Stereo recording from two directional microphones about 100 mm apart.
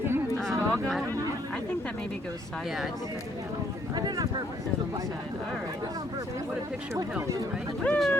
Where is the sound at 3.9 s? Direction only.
45° right (ahead or behind).